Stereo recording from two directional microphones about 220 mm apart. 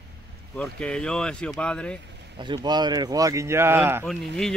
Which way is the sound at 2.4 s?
20° right (ahead or behind).